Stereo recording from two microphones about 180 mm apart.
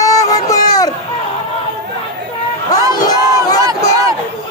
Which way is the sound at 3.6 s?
20° right (ahead or behind).